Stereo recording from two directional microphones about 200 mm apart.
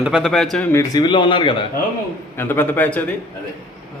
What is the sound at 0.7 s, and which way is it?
Speech, 20° left (ahead or behind).